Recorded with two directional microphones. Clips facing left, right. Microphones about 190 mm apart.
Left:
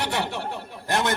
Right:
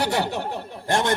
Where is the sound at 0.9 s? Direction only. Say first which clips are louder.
Right 2 dB; 30° right (ahead or behind).